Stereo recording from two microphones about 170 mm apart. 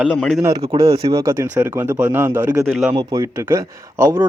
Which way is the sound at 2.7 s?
Centre (ahead or behind).